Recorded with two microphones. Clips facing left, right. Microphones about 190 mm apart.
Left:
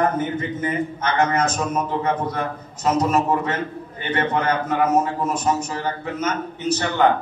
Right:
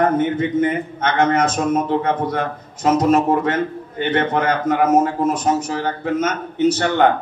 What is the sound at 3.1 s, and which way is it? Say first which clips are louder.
Speech: right 5 dB; 50° right (ahead or behind).